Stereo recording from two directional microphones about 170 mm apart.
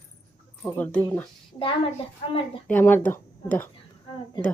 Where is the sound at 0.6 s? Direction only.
10° left (ahead or behind).